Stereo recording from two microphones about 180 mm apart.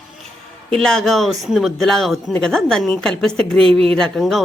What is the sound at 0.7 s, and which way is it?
A man's voice, 5° left (ahead or behind).